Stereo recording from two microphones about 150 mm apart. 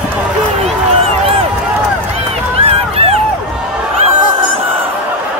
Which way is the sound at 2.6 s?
40° right (ahead or behind).